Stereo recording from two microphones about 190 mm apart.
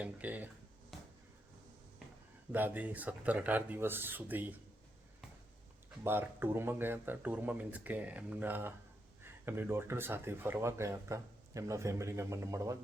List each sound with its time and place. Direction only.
0.0 s a sound: 10° right (ahead or behind)
2.5 s speech: 10° right (ahead or behind)
6.0 s speech: 10° right (ahead or behind)